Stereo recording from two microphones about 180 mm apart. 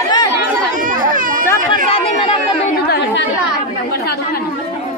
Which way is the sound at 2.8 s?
60° left (ahead or behind).